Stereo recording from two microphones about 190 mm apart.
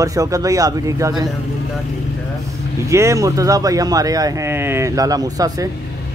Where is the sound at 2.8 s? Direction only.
15° right (ahead or behind).